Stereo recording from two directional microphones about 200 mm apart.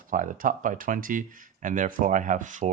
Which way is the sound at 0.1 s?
40° right (ahead or behind).